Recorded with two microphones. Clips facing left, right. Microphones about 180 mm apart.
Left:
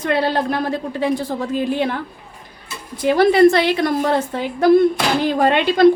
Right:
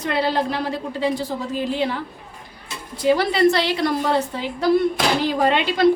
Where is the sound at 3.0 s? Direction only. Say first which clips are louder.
Left 5 dB; 50° left (ahead or behind).